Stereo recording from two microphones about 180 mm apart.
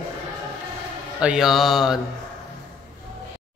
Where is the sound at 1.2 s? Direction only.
5° right (ahead or behind).